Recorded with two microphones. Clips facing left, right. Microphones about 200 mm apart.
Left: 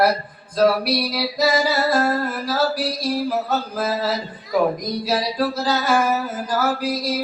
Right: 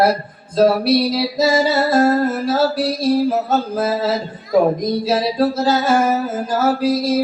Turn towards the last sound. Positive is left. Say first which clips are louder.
# right 6 dB
turn(degrees=-25)  # may be behind; listen again after turning